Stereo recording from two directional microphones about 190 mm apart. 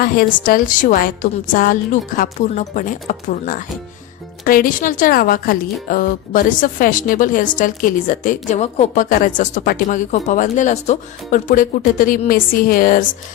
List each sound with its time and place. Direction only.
0.0 s a woman's voice: 50° left (ahead or behind)